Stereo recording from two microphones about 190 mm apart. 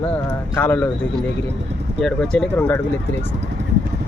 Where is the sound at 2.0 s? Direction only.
5° left (ahead or behind).